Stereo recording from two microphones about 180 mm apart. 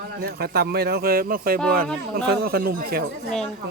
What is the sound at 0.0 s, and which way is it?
Speech, 55° right (ahead or behind).